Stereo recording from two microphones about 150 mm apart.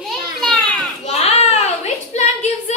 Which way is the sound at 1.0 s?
45° left (ahead or behind).